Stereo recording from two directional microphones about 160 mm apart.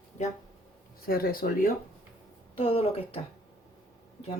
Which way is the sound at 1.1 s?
70° left (ahead or behind).